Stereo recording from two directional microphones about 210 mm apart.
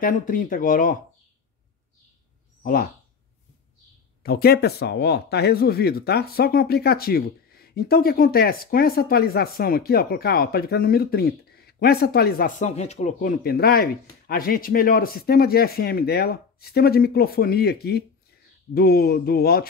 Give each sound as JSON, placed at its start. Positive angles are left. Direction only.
{"t": 0.0, "sound": "speech", "side_deg": 40}
{"t": 2.6, "sound": "speech", "side_deg": 45}
{"t": 4.2, "sound": "speech", "side_deg": 45}